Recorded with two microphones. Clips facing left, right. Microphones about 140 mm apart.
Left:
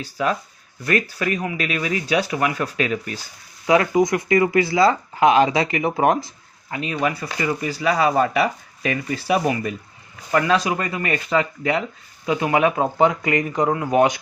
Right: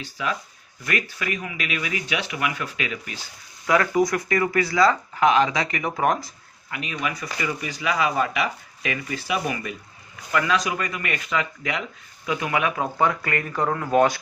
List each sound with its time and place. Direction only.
0.0 s speech: 40° left (ahead or behind)
3.7 s speech: 20° left (ahead or behind)